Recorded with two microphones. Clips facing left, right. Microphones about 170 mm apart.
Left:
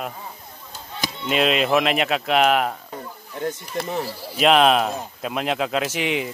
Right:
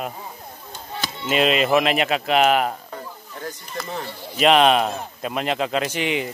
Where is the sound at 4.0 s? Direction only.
5° left (ahead or behind).